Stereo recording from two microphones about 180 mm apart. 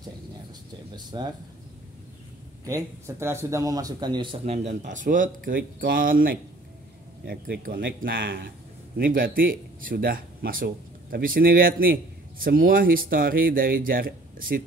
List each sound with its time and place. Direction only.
0.9 s speech: 25° right (ahead or behind)
2.6 s speech: 15° right (ahead or behind); by 8.5 s 70° right (ahead or behind)
8.9 s speech: 55° right (ahead or behind)